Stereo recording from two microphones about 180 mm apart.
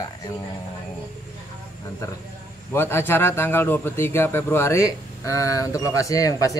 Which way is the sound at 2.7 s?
15° left (ahead or behind).